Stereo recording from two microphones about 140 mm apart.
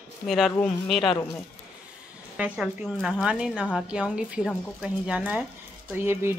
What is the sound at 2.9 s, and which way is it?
Speech, 5° left (ahead or behind).